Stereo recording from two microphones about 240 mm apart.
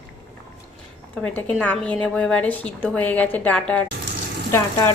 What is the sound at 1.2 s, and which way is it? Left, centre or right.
A woman's voice, centre.